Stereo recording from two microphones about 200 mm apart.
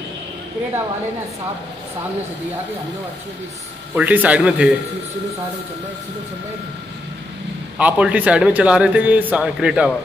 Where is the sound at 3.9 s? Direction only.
5° right (ahead or behind).